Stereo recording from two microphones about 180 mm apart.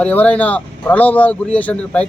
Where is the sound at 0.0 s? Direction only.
10° left (ahead or behind).